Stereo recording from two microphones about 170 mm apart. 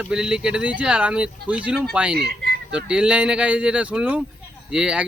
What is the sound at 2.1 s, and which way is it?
Speech, 75° right (ahead or behind).